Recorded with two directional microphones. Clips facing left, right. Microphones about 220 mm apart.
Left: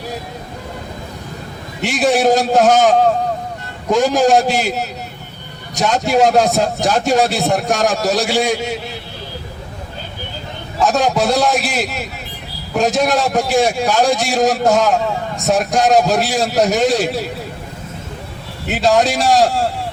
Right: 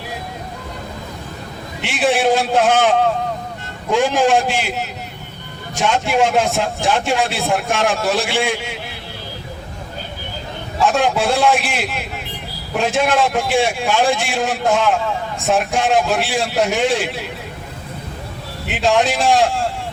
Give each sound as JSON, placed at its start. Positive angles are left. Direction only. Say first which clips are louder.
{"t": 1.8, "sound": "a man's voice", "louder": "left 3 dB", "side_deg": 40}
{"t": 10.8, "sound": "a man's voice", "louder": "left 1 dB", "side_deg": 40}
{"t": 18.7, "sound": "a man's voice", "louder": "left 2 dB", "side_deg": 40}